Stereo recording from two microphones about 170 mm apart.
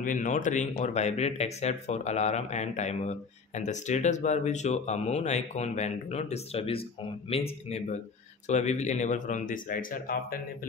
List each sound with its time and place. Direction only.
0.0 s speech: 50° left (ahead or behind)